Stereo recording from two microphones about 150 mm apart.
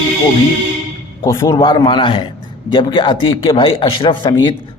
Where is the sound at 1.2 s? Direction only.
20° left (ahead or behind).